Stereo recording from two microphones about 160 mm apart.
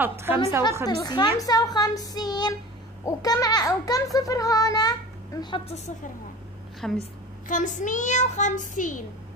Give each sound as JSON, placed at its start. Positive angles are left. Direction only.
{"t": 0.2, "sound": "a woman's voice", "side_deg": -15}
{"t": 0.8, "sound": "a child's voice", "side_deg": 25}
{"t": 6.8, "sound": "a woman's voice", "side_deg": 5}
{"t": 7.4, "sound": "a child's voice", "side_deg": 55}